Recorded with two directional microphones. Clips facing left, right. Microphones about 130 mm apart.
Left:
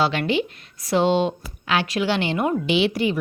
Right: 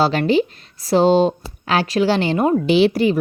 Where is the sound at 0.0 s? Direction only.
40° right (ahead or behind).